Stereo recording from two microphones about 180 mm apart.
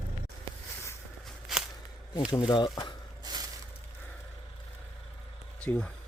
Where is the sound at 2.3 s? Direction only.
25° left (ahead or behind).